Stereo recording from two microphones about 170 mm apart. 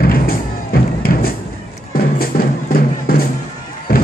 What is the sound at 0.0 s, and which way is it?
Music, 60° left (ahead or behind).